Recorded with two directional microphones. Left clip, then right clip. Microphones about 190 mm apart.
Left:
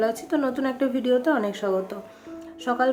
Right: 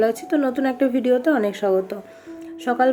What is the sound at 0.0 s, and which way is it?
Speech, 10° right (ahead or behind).